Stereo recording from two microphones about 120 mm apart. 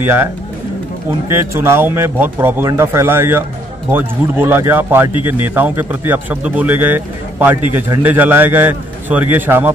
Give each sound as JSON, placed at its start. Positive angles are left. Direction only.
{"t": 0.0, "sound": "speech", "side_deg": -15}
{"t": 1.3, "sound": "speech", "side_deg": -20}